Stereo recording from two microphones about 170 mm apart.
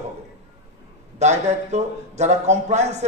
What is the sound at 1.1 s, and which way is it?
A man's voice, 40° right (ahead or behind).